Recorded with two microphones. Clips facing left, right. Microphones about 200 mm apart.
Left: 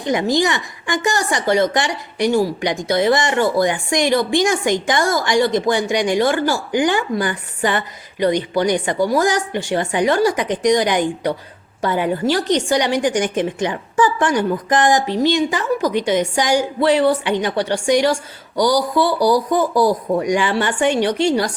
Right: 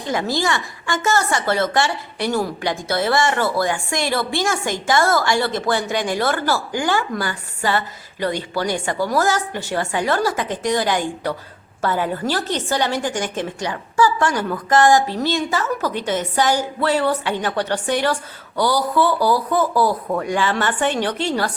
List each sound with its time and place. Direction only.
0.1 s a woman's voice: 20° left (ahead or behind)